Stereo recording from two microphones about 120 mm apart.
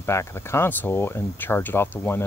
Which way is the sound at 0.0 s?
20° left (ahead or behind).